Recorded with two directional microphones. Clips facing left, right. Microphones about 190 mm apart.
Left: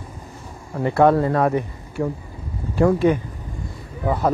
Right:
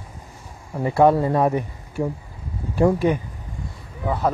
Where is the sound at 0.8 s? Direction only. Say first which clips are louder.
Left 1 dB; 10° right (ahead or behind).